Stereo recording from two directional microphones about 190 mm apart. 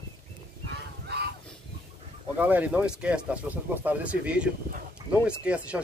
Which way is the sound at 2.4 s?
10° right (ahead or behind).